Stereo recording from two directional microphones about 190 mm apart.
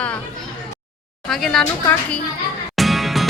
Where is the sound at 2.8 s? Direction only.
Centre (ahead or behind).